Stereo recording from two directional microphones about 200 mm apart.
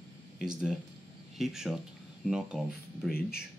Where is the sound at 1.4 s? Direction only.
Centre (ahead or behind).